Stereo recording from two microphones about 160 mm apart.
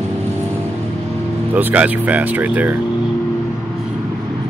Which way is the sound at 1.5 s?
10° right (ahead or behind).